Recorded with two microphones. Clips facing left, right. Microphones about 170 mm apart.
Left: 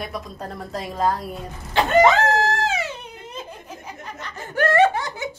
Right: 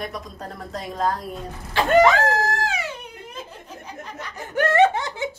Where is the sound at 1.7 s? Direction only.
25° left (ahead or behind).